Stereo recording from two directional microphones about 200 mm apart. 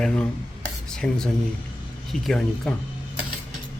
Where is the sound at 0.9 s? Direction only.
5° left (ahead or behind).